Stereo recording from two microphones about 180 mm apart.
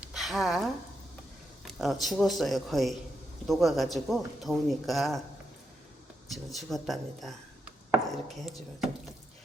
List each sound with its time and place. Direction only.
0.1 s a sound: centre (ahead or behind)
1.6 s speech: centre (ahead or behind)
6.2 s speech: centre (ahead or behind)